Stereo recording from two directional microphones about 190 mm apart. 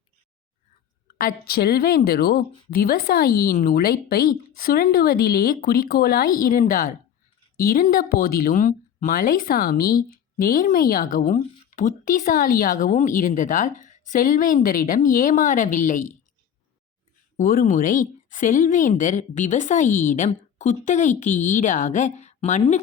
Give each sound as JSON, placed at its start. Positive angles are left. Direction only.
{"t": 1.2, "sound": "speech", "side_deg": 55}
{"t": 17.3, "sound": "speech", "side_deg": 45}